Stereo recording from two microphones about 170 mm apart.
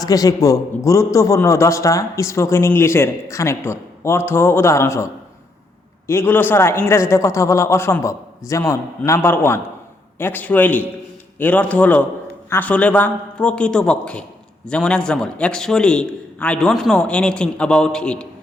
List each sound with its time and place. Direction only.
0.0 s a man's voice: 20° left (ahead or behind)
6.1 s a man's voice: 15° left (ahead or behind)